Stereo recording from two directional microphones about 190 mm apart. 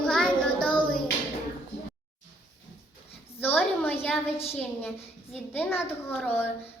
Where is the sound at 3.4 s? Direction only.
10° left (ahead or behind).